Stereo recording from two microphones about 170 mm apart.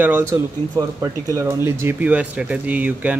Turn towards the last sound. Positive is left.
turn(degrees=-10)  # may be behind; listen again after turning